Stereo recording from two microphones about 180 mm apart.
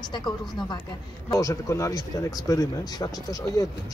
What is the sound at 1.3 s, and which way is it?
Speech, 20° left (ahead or behind).